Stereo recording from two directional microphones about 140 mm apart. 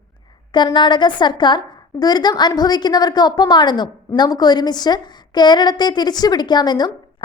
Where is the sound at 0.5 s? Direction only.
30° left (ahead or behind).